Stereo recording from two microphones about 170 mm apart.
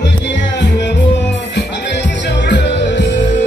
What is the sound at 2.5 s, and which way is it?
Music, 90° left.